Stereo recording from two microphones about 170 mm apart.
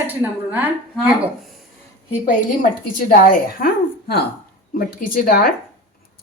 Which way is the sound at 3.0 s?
55° left (ahead or behind).